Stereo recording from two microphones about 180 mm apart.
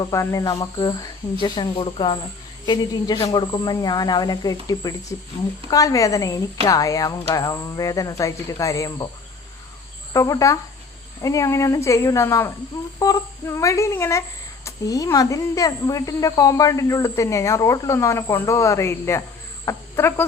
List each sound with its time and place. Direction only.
0.0 s speech: 15° left (ahead or behind)
10.1 s speech: 20° left (ahead or behind)